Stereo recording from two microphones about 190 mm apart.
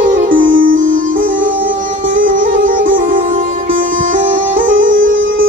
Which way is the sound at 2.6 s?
45° right (ahead or behind).